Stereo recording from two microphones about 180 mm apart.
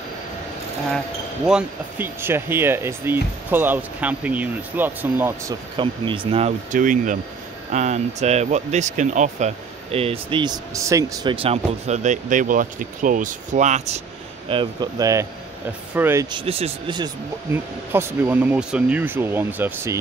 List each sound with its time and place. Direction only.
0.9 s speech: 5° right (ahead or behind)
5.8 s speech: 30° right (ahead or behind)
6.7 s speech: 45° right (ahead or behind); by 11.3 s 20° right (ahead or behind)
11.3 s speech: 35° right (ahead or behind)
14.5 s speech: 25° right (ahead or behind)
16.3 s speech: 30° right (ahead or behind)
17.5 s speech: 15° right (ahead or behind)